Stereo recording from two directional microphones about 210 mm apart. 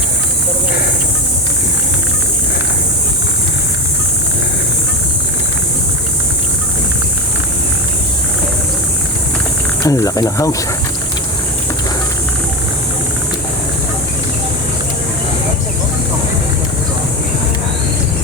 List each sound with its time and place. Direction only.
9.8 s speech: 15° left (ahead or behind)